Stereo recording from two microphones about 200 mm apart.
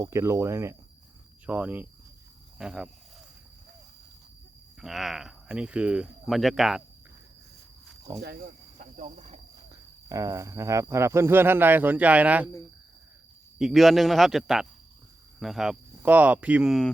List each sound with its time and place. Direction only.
0.0 s speech: 15° right (ahead or behind)
4.8 s speech: centre (ahead or behind)
8.2 s speech: 50° right (ahead or behind); by 9.4 s 35° right (ahead or behind)
10.1 s speech: 15° right (ahead or behind)
13.6 s speech: centre (ahead or behind)